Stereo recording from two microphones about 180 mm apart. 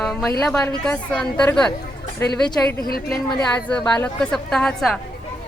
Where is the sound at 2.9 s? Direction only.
55° left (ahead or behind).